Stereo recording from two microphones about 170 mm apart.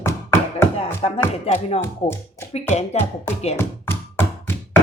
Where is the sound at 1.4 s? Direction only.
35° left (ahead or behind).